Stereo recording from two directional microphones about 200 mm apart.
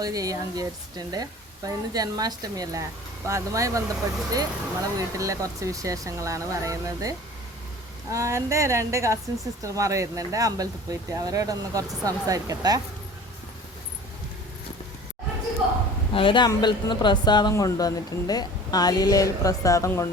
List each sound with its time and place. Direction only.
0.0 s a woman's voice: 15° right (ahead or behind)
16.1 s speech: 25° left (ahead or behind)